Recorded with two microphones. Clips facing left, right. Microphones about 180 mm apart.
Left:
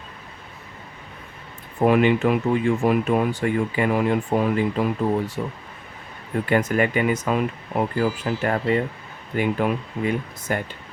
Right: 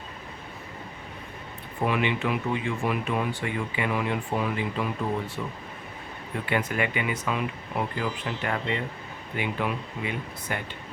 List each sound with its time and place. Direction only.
1.8 s speech: 45° left (ahead or behind)